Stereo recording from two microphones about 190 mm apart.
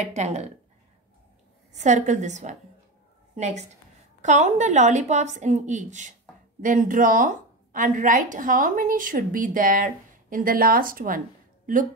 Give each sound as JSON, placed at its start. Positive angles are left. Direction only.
{"t": 0.0, "sound": "a woman's voice", "side_deg": -35}
{"t": 1.7, "sound": "a woman's voice", "side_deg": -40}